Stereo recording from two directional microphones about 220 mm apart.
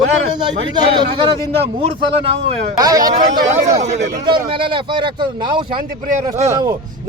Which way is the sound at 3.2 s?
30° right (ahead or behind).